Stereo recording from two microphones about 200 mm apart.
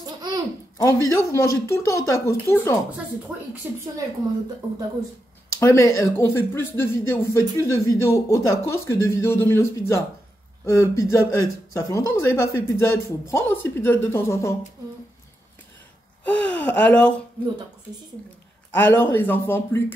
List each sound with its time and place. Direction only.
0.0 s babbling: 20° right (ahead or behind)
0.7 s speech: 15° left (ahead or behind)
3.6 s a woman's voice: 10° right (ahead or behind)
5.6 s speech: 15° left (ahead or behind)
16.3 s speech: 5° left (ahead or behind)
18.7 s speech: 10° left (ahead or behind)